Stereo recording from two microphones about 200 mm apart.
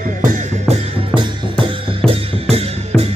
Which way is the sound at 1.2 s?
25° right (ahead or behind).